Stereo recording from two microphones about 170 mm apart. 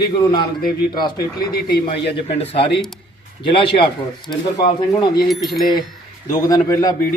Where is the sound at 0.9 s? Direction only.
25° left (ahead or behind).